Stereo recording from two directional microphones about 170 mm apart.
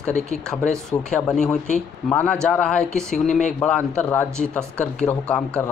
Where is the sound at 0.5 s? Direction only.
5° left (ahead or behind).